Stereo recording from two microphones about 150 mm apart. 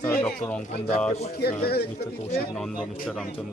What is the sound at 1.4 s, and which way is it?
Speech, 90° left.